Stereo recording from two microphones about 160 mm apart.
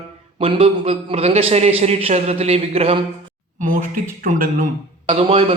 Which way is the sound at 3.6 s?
55° right (ahead or behind).